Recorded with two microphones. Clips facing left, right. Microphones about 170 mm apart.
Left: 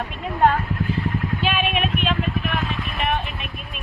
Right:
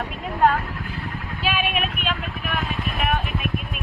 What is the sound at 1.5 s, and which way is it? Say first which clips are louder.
Vehicle: left 1 dB; 5° right (ahead or behind).